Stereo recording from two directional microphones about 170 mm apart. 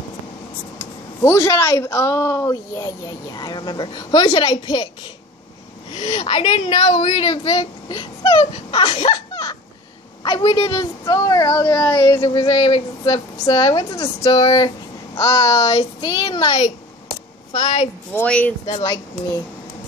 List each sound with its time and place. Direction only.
0.7 s speech: 15° left (ahead or behind)
6.0 s a child's voice: 35° left (ahead or behind)
6.8 s a child's voice: 45° left (ahead or behind)
13.8 s speech: 15° left (ahead or behind)
14.3 s a child's voice: 25° left (ahead or behind)
18.1 s speech: 10° left (ahead or behind)
18.7 s a child's voice: 35° left (ahead or behind)